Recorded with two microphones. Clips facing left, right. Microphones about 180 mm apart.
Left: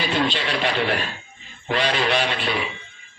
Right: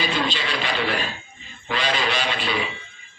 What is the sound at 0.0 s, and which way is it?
A man's voice, 60° left (ahead or behind).